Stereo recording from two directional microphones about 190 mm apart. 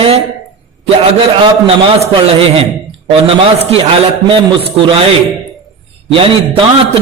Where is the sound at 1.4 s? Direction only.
30° right (ahead or behind).